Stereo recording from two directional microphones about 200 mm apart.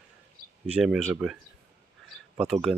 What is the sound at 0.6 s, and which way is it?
Speech, 5° right (ahead or behind).